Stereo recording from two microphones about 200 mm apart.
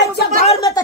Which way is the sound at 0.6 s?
15° left (ahead or behind).